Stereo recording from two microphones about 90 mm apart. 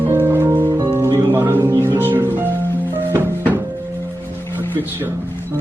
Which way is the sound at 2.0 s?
25° right (ahead or behind).